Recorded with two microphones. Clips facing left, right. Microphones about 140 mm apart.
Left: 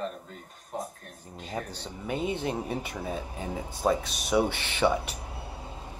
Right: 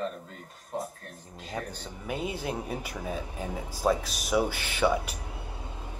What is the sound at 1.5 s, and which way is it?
Speech, 5° right (ahead or behind).